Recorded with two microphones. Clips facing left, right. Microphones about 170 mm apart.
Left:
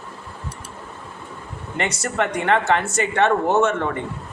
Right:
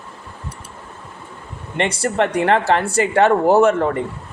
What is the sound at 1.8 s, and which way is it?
Speech, 30° right (ahead or behind).